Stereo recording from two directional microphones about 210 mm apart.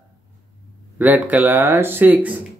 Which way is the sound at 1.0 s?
10° right (ahead or behind).